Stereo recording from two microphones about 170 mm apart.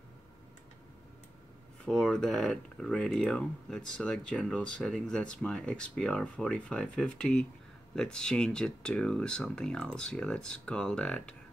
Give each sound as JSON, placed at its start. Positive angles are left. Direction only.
{"t": 1.9, "sound": "speech", "side_deg": 5}